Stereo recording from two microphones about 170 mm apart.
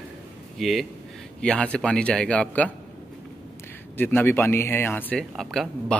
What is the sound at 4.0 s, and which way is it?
Speech, 10° left (ahead or behind).